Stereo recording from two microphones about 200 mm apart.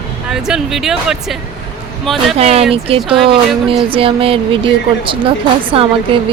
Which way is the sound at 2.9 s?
30° right (ahead or behind).